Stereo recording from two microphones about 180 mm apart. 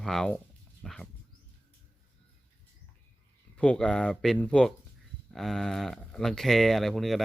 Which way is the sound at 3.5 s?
5° left (ahead or behind).